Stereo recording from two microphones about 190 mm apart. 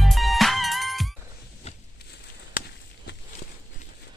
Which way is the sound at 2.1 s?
60° left (ahead or behind).